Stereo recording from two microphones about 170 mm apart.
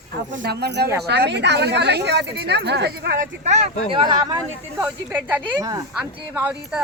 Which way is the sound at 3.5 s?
40° right (ahead or behind).